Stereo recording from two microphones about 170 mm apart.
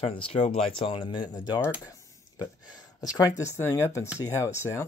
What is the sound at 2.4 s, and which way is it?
Speech, 20° left (ahead or behind).